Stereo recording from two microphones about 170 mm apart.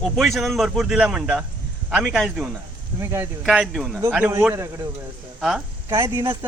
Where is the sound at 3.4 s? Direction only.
5° right (ahead or behind).